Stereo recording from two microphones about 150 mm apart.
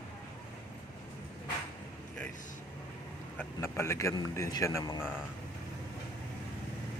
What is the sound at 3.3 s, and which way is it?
Speech, 15° left (ahead or behind).